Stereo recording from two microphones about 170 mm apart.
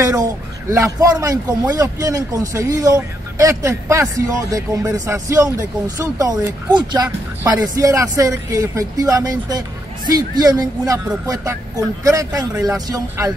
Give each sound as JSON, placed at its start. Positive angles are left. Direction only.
{"t": 0.2, "sound": "a man's voice", "side_deg": -20}